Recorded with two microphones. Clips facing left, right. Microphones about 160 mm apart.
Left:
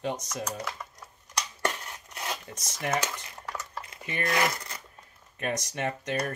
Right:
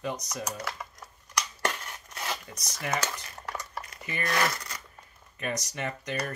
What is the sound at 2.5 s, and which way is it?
Speech, 50° left (ahead or behind).